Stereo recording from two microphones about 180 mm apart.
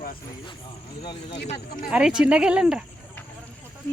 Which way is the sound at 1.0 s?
30° left (ahead or behind).